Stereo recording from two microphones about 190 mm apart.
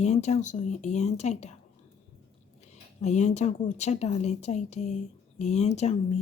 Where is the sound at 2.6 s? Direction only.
40° left (ahead or behind).